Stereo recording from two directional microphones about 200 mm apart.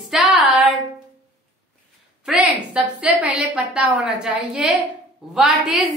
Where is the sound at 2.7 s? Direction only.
5° right (ahead or behind).